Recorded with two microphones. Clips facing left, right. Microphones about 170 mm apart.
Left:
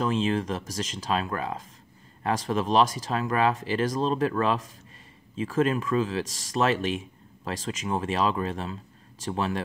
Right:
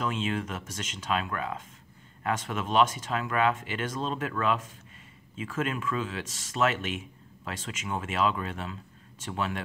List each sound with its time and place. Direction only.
0.0 s speech: 35° left (ahead or behind)